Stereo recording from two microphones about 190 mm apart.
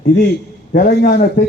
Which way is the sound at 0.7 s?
55° left (ahead or behind).